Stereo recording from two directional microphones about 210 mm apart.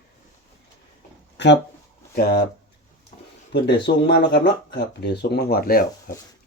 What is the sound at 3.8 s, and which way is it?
Speech, 55° left (ahead or behind).